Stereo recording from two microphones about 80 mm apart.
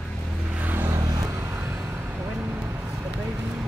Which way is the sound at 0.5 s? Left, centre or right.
Right.